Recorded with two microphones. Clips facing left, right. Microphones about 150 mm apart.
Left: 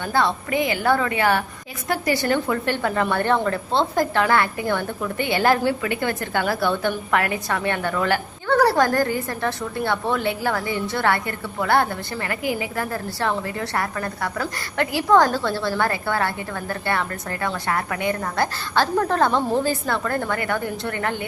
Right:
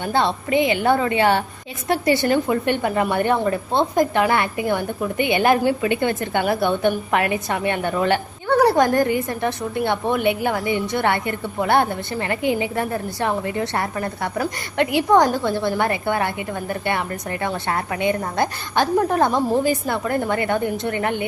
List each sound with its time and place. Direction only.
0.1 s a woman's voice: 25° right (ahead or behind)